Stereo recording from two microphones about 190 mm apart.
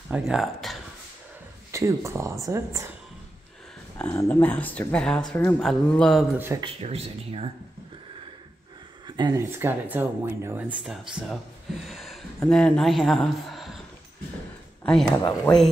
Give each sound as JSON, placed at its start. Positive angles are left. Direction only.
{"t": 0.1, "sound": "speech", "side_deg": 0}
{"t": 1.7, "sound": "speech", "side_deg": -15}
{"t": 4.1, "sound": "speech", "side_deg": 10}
{"t": 6.3, "sound": "speech", "side_deg": -10}
{"t": 6.6, "sound": "speech", "side_deg": -35}
{"t": 9.0, "sound": "speech", "side_deg": -25}
{"t": 9.5, "sound": "speech", "side_deg": -10}
{"t": 14.8, "sound": "speech", "side_deg": 5}